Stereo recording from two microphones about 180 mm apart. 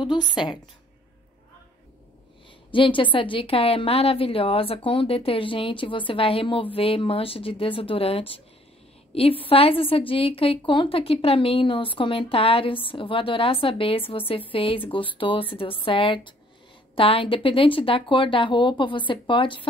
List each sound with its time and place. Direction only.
0.0 s a woman's voice: 25° left (ahead or behind)
2.7 s a woman's voice: 30° left (ahead or behind)